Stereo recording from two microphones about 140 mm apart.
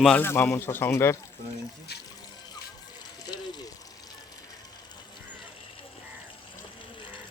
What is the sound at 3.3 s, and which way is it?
Water, 30° left (ahead or behind).